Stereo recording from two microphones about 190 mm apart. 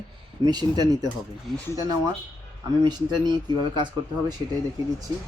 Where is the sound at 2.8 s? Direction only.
25° right (ahead or behind).